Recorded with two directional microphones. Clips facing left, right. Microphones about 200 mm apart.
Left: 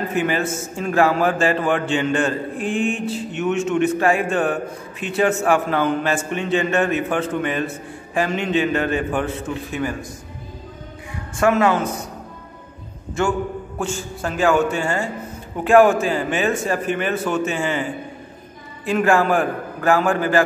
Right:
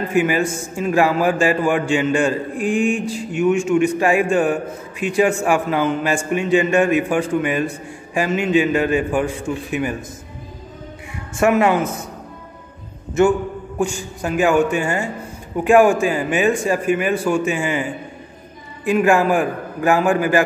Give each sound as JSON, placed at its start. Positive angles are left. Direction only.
{"t": 0.1, "sound": "a man's voice", "side_deg": -10}
{"t": 11.3, "sound": "speech", "side_deg": -20}
{"t": 13.2, "sound": "a man's voice", "side_deg": -20}
{"t": 18.9, "sound": "a man's voice", "side_deg": -15}